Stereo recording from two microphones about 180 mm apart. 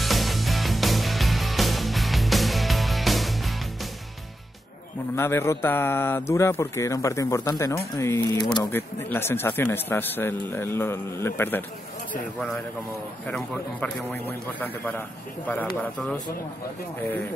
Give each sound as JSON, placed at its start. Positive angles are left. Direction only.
{"t": 0.0, "sound": "music", "side_deg": 0}
{"t": 5.1, "sound": "speech", "side_deg": 15}